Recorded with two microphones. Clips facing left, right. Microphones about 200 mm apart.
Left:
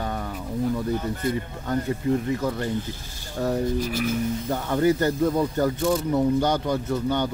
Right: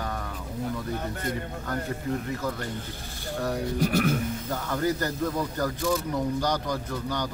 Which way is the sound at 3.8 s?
60° right (ahead or behind).